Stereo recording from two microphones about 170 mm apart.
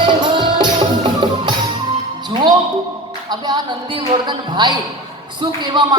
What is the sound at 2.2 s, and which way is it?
Music, 25° right (ahead or behind).